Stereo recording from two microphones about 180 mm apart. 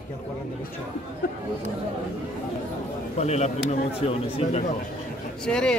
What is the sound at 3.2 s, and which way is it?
Speech, 40° left (ahead or behind).